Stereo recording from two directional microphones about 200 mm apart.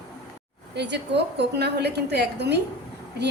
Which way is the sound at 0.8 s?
60° right (ahead or behind).